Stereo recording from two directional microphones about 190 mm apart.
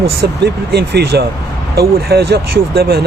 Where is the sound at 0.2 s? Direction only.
60° right (ahead or behind).